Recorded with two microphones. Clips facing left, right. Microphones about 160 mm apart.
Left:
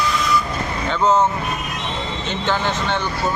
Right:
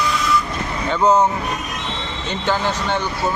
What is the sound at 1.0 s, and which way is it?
Speech, 15° right (ahead or behind).